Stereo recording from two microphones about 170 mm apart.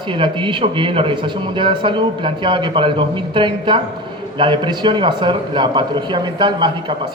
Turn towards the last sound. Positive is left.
turn(degrees=-25)  # may be behind; listen again after turning